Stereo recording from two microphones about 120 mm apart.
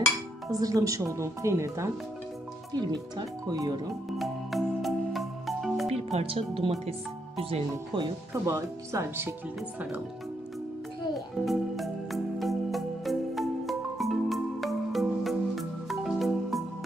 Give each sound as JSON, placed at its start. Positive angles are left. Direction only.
{"t": 0.5, "sound": "speech", "side_deg": -30}
{"t": 2.7, "sound": "speech", "side_deg": -35}
{"t": 4.2, "sound": "music", "side_deg": 0}
{"t": 6.1, "sound": "speech", "side_deg": -50}
{"t": 8.3, "sound": "speech", "side_deg": -25}
{"t": 11.4, "sound": "music", "side_deg": 0}